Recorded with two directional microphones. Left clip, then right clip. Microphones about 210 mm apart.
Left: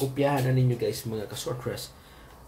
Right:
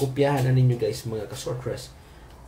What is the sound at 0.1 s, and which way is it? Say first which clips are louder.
Speech: right 2 dB; 15° right (ahead or behind).